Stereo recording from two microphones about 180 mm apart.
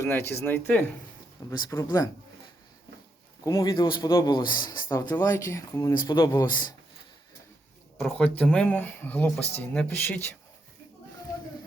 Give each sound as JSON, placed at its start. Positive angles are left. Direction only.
{"t": 0.0, "sound": "speech", "side_deg": 15}
{"t": 3.4, "sound": "speech", "side_deg": 20}
{"t": 8.0, "sound": "speech", "side_deg": 5}